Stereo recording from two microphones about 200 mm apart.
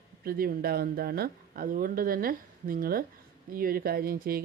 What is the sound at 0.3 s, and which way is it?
A woman's voice, 50° right (ahead or behind).